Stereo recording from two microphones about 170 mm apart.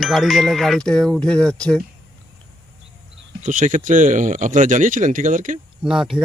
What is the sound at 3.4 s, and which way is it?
Speech, 50° right (ahead or behind).